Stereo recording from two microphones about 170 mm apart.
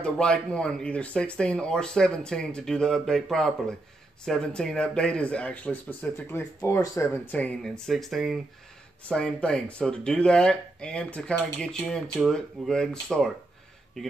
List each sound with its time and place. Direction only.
0.0 s speech: 5° left (ahead or behind)